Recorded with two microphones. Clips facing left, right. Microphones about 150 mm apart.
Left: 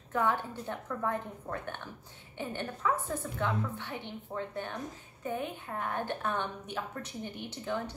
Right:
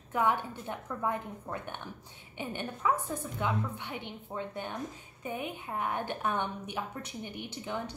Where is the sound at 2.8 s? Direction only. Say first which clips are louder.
Right 1 dB; 15° right (ahead or behind).